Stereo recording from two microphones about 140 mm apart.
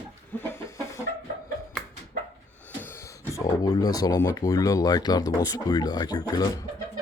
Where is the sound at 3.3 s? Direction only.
25° left (ahead or behind).